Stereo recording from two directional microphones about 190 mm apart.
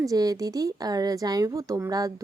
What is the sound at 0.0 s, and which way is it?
Speech, 20° right (ahead or behind).